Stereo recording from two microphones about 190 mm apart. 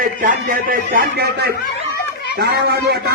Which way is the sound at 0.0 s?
45° right (ahead or behind).